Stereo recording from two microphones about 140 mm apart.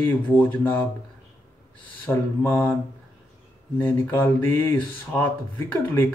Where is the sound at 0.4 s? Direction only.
15° left (ahead or behind).